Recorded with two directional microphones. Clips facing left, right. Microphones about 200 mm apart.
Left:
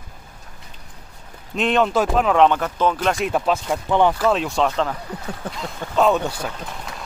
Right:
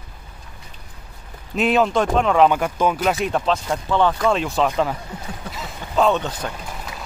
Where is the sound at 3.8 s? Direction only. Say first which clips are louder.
Left 2 dB; 15° left (ahead or behind).